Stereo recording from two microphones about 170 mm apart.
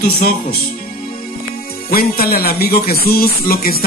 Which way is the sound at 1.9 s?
60° left (ahead or behind).